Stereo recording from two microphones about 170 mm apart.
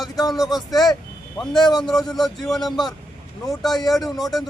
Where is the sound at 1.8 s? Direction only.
Centre (ahead or behind).